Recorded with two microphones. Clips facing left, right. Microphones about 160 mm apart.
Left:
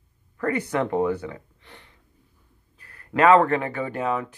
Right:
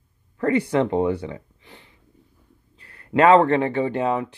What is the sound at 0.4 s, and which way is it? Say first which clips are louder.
Speech: right 5 dB; 30° right (ahead or behind).